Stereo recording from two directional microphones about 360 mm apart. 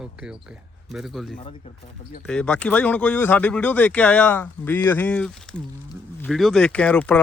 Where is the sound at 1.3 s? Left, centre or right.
Centre.